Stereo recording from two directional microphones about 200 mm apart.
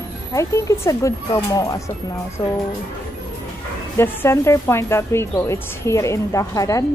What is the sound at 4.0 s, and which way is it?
Speech, 15° left (ahead or behind).